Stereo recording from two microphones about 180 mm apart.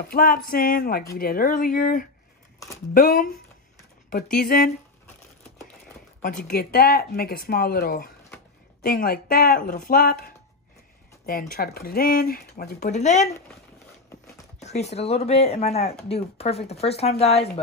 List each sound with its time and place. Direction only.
0.0 s speech: 55° left (ahead or behind)
6.2 s speech: 50° left (ahead or behind)
12.8 s speech: 40° left (ahead or behind)
14.6 s speech: 40° left (ahead or behind)